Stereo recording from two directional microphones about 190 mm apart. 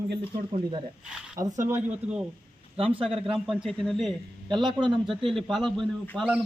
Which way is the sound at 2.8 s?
30° right (ahead or behind).